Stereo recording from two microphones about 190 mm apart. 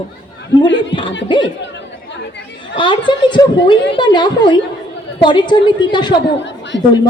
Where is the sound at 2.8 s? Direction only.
25° left (ahead or behind).